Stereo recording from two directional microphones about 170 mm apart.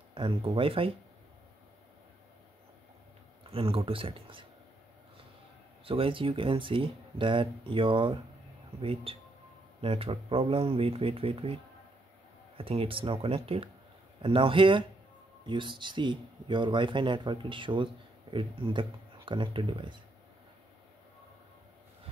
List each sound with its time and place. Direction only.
0.1 s speech: 30° right (ahead or behind)
3.4 s speech: 30° right (ahead or behind)
5.9 s speech: 30° right (ahead or behind)
12.5 s speech: 35° right (ahead or behind)